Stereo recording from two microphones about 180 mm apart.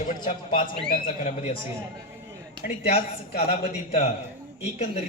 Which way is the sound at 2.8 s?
35° left (ahead or behind).